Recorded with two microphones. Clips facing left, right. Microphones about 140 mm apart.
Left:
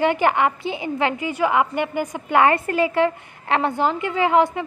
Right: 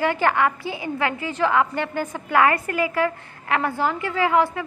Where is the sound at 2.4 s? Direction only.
25° left (ahead or behind).